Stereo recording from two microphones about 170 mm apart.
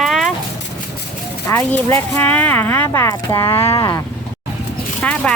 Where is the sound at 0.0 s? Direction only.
Centre (ahead or behind).